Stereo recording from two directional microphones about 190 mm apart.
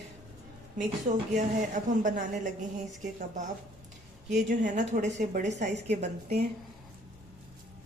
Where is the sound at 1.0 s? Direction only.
40° right (ahead or behind).